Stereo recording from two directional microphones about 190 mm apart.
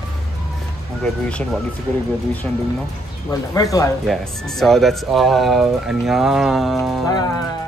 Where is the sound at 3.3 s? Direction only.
20° left (ahead or behind).